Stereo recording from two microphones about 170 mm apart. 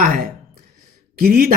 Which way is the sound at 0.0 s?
60° right (ahead or behind).